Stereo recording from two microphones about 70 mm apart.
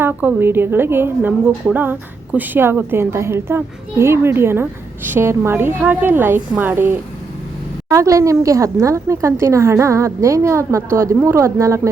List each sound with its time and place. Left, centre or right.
0.0 s a woman's voice: right
7.9 s a woman's voice: right